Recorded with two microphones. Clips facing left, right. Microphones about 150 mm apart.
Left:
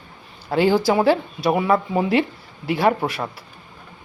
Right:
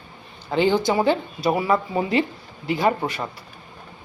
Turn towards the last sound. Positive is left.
turn(degrees=0)  # may be behind; listen again after turning